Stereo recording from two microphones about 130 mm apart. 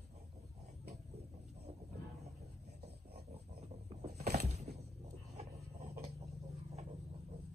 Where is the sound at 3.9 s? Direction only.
55° right (ahead or behind).